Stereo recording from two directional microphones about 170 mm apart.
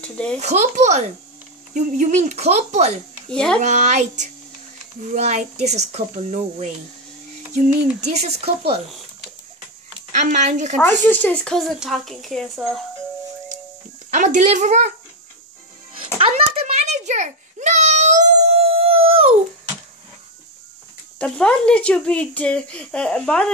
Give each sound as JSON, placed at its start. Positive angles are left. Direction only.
{"t": 0.0, "sound": "speech", "side_deg": 5}
{"t": 0.4, "sound": "speech", "side_deg": -40}
{"t": 3.3, "sound": "a child's voice", "side_deg": 5}
{"t": 3.6, "sound": "speech", "side_deg": -45}
{"t": 8.0, "sound": "speech", "side_deg": -40}
{"t": 10.1, "sound": "speech", "side_deg": -45}
{"t": 10.8, "sound": "speech", "side_deg": 10}
{"t": 14.1, "sound": "speech", "side_deg": -45}
{"t": 16.2, "sound": "a sound", "side_deg": -35}
{"t": 21.2, "sound": "speech", "side_deg": 5}